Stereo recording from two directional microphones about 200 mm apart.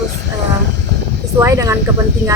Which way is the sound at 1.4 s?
15° right (ahead or behind).